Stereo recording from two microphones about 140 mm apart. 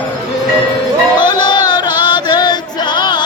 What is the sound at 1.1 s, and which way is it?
Music, 30° left (ahead or behind).